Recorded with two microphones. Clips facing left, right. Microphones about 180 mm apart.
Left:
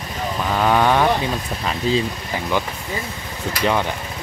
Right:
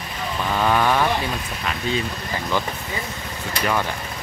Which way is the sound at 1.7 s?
30° left (ahead or behind).